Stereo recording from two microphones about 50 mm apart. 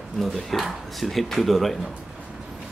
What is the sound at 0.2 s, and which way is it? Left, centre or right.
Speech, centre.